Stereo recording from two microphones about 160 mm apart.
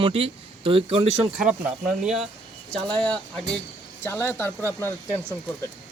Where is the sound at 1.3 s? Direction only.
5° right (ahead or behind); by 4.5 s 15° left (ahead or behind).